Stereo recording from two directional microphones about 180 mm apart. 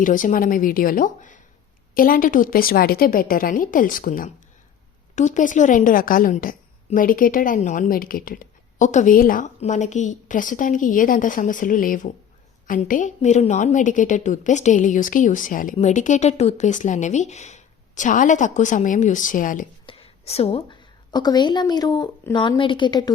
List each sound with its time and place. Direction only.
0.0 s a woman's voice: 45° left (ahead or behind)
19.8 s a woman's voice: 30° left (ahead or behind)